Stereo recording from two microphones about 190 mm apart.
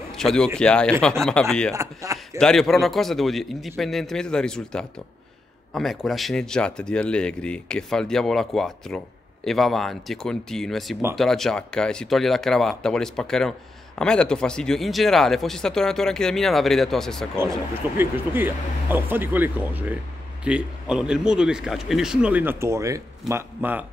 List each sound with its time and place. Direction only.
0.1 s a man's voice: 5° left (ahead or behind)
1.7 s speech: 15° right (ahead or behind)
2.3 s speech: centre (ahead or behind)
17.4 s speech: 10° right (ahead or behind)